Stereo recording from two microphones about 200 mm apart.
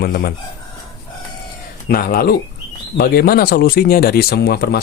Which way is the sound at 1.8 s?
50° left (ahead or behind).